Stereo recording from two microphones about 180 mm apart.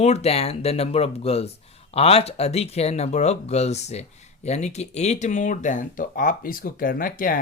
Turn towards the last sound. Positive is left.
turn(degrees=50)  # may be behind; listen again after turning